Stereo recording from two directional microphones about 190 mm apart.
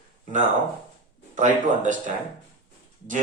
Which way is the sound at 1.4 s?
40° right (ahead or behind).